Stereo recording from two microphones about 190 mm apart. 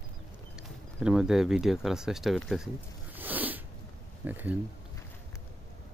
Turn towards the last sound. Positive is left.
turn(degrees=-10)  # may be behind; listen again after turning